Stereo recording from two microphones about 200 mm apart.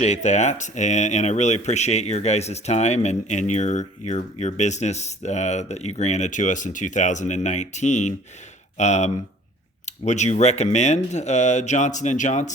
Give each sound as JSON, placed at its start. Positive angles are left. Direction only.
{"t": 0.0, "sound": "speech", "side_deg": 35}